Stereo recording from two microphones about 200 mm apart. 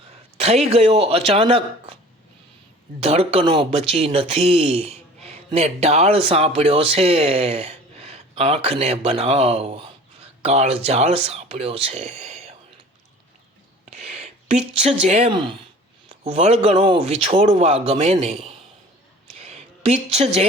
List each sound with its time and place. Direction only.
0.1 s a man's voice: 30° right (ahead or behind)
3.0 s speech: 30° right (ahead or behind)
13.9 s speech: 35° right (ahead or behind)
19.4 s a sound: 30° right (ahead or behind)